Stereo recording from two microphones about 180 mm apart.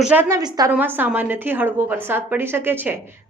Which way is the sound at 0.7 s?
10° right (ahead or behind).